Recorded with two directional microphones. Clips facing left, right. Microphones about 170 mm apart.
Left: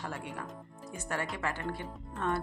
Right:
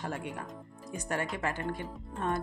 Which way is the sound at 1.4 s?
20° right (ahead or behind).